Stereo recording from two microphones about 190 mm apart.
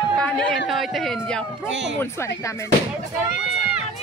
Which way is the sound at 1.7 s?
70° right (ahead or behind).